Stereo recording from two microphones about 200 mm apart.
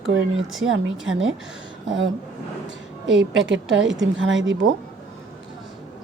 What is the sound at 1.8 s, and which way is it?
Speech, 70° right (ahead or behind).